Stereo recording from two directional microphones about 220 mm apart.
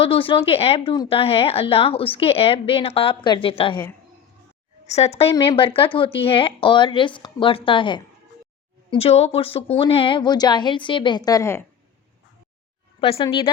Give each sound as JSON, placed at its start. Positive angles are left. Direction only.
{"t": 0.0, "sound": "a woman's voice", "side_deg": 25}
{"t": 4.9, "sound": "a woman's voice", "side_deg": 30}
{"t": 13.0, "sound": "a woman's voice", "side_deg": 25}